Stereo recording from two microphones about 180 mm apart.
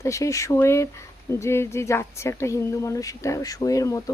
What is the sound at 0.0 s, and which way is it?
Speech, 15° left (ahead or behind).